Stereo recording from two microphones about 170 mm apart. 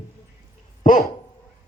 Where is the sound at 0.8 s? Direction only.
50° left (ahead or behind).